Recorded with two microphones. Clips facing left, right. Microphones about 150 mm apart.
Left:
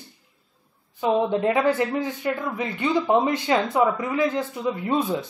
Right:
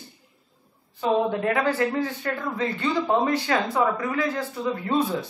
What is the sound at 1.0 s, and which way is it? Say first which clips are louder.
A man's voice: left 1 dB; 20° left (ahead or behind).